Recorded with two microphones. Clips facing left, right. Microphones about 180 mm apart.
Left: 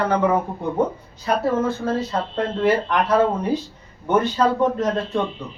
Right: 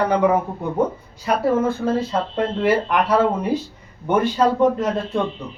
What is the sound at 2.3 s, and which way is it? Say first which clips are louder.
A man's voice: even; 10° right (ahead or behind).